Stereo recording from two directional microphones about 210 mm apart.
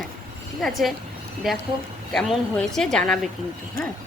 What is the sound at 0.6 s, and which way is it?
A woman's voice, centre (ahead or behind).